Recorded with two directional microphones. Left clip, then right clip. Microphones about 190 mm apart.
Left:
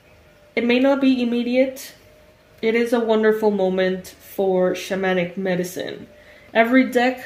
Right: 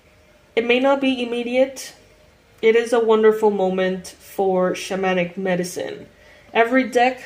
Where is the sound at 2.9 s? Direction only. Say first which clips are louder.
Right 3 dB; 35° left (ahead or behind).